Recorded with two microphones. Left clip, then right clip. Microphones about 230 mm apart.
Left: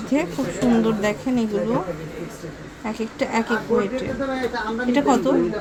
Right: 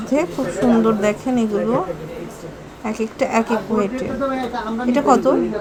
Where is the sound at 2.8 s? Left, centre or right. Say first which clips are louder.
Right 5 dB; centre.